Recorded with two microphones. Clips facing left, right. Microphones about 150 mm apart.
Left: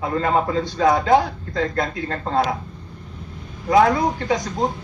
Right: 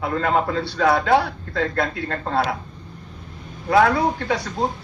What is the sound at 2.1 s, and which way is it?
Speech, 35° left (ahead or behind).